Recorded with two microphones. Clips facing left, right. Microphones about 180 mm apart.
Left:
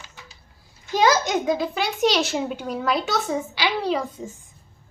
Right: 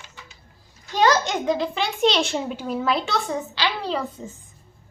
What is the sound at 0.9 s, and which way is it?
A child's voice, 10° left (ahead or behind).